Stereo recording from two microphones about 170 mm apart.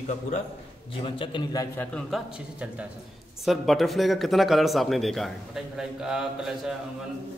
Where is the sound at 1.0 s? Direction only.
30° left (ahead or behind).